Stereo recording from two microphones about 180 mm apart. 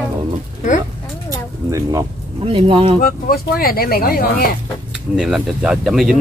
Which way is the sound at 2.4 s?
30° right (ahead or behind).